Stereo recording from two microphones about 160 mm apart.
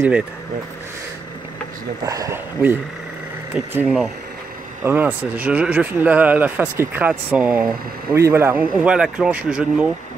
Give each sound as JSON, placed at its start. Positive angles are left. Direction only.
{"t": 2.0, "sound": "speech", "side_deg": -20}
{"t": 3.5, "sound": "speech", "side_deg": -5}